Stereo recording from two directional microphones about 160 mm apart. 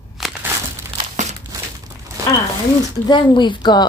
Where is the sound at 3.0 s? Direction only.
30° left (ahead or behind).